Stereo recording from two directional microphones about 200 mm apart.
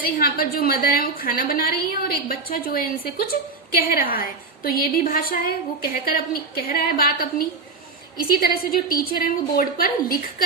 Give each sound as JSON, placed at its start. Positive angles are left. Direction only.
{"t": 0.0, "sound": "a woman's voice", "side_deg": 50}